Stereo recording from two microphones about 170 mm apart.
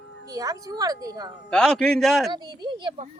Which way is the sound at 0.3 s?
20° right (ahead or behind).